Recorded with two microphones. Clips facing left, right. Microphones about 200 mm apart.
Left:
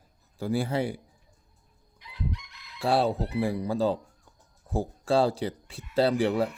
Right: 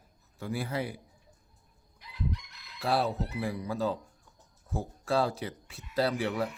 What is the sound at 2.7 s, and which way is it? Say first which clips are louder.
Speech: left 4 dB; 30° left (ahead or behind).